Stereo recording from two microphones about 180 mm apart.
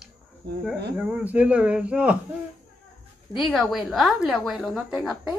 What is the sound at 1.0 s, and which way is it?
Speech, 5° right (ahead or behind).